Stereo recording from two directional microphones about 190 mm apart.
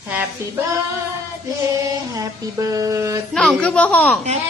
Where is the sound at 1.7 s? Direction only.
20° right (ahead or behind).